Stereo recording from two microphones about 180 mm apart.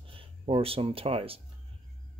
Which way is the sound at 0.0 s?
30° right (ahead or behind).